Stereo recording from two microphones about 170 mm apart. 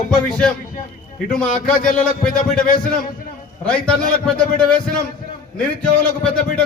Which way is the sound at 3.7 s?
5° left (ahead or behind).